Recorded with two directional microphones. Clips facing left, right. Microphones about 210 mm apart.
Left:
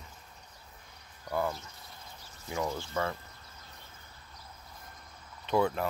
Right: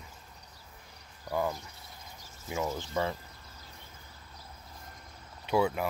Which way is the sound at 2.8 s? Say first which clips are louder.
Right 1 dB; 15° right (ahead or behind).